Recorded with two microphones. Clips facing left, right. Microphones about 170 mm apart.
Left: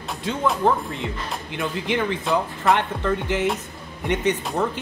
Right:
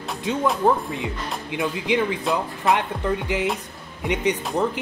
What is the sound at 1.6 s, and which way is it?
Speech, 15° right (ahead or behind).